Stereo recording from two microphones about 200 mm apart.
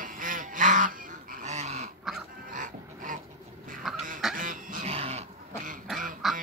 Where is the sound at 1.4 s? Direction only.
35° right (ahead or behind).